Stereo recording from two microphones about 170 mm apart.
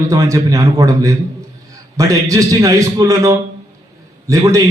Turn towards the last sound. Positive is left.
turn(degrees=-20)  # may be behind; listen again after turning